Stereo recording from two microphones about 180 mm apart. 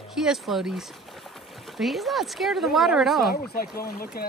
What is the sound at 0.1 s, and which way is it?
Speech, centre (ahead or behind).